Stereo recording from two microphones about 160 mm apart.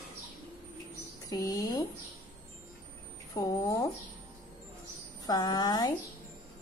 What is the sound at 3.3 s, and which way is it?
Speech, 20° left (ahead or behind).